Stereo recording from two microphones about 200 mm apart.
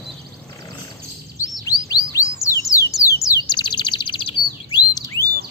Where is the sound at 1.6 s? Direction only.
20° left (ahead or behind).